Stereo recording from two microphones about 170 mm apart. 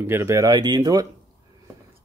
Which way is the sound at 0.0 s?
15° right (ahead or behind).